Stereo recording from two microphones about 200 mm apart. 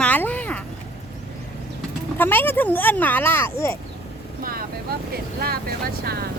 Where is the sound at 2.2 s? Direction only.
10° left (ahead or behind).